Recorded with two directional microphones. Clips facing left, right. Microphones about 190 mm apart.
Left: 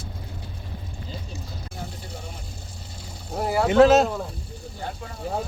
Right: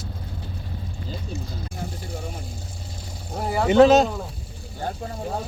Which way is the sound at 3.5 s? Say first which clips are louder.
Right 1 dB; centre (ahead or behind).